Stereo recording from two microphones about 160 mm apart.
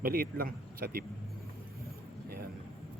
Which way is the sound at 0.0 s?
70° right (ahead or behind).